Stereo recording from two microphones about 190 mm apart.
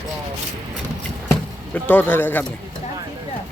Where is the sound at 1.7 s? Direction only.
10° left (ahead or behind).